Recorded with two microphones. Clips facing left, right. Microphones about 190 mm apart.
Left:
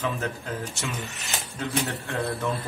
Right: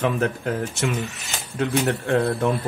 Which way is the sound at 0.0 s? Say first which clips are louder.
Right 7 dB; 65° right (ahead or behind).